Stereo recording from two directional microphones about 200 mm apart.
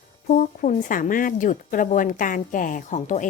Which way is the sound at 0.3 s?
40° left (ahead or behind).